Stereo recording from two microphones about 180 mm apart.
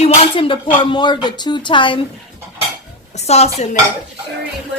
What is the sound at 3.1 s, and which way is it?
Speech, 35° left (ahead or behind).